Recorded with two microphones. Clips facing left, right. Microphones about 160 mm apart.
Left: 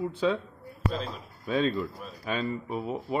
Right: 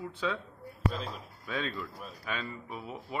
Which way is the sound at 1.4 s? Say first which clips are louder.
Left 9 dB; 30° left (ahead or behind).